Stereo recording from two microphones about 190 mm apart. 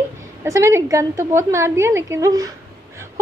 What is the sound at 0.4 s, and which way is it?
A woman's voice, 15° right (ahead or behind).